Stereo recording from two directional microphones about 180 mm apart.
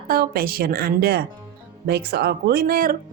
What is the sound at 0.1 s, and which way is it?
Speech, 55° right (ahead or behind).